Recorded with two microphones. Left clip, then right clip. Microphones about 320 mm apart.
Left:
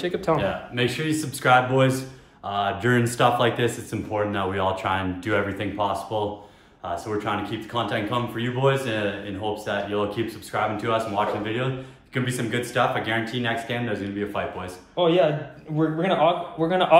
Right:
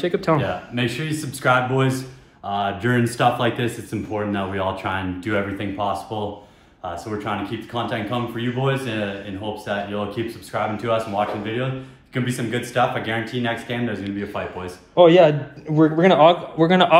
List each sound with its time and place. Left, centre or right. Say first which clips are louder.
0.0 s speech: right 3 dB; right
0.7 s speech: left 1 dB; centre
15.0 s speech: right 8 dB; right